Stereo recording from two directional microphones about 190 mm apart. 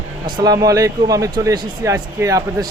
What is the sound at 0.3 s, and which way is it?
Speech, 20° right (ahead or behind).